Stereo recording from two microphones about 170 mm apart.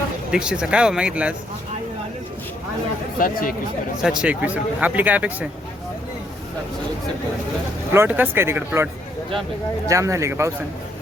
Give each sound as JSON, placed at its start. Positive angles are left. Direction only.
{"t": 0.3, "sound": "speech", "side_deg": -5}
{"t": 3.2, "sound": "speech", "side_deg": 55}
{"t": 4.0, "sound": "a man's voice", "side_deg": -5}
{"t": 7.9, "sound": "a man's voice", "side_deg": -10}